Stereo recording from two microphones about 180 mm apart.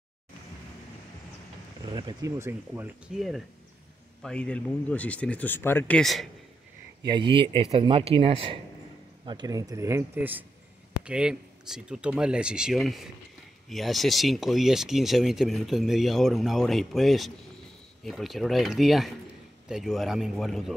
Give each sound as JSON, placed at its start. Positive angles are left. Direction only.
{"t": 1.9, "sound": "speech", "side_deg": -25}
{"t": 4.2, "sound": "speech", "side_deg": 5}
{"t": 7.0, "sound": "speech", "side_deg": -25}